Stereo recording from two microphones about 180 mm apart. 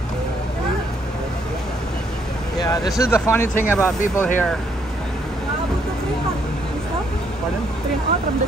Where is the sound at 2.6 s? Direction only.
20° left (ahead or behind).